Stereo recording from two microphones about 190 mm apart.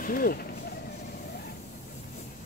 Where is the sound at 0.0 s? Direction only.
50° left (ahead or behind).